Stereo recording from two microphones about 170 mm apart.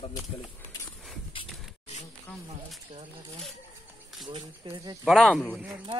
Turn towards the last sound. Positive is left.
turn(degrees=0)  # may be behind; listen again after turning